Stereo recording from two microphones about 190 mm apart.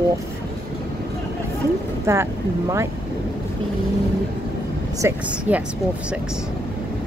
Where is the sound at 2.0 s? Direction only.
15° right (ahead or behind).